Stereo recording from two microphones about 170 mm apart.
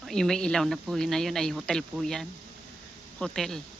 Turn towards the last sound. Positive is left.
turn(degrees=5)  # may be behind; listen again after turning